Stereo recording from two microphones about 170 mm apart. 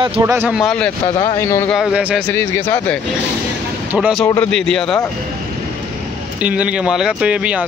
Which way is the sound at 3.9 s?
5° right (ahead or behind).